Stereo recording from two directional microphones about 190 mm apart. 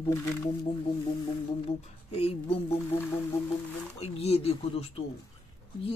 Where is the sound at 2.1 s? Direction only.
30° left (ahead or behind).